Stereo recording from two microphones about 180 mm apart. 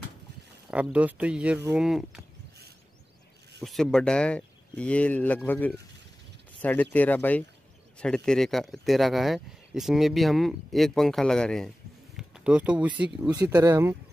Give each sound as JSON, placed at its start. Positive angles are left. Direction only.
{"t": 0.7, "sound": "speech", "side_deg": -5}
{"t": 3.6, "sound": "speech", "side_deg": 0}
{"t": 13.4, "sound": "speech", "side_deg": -20}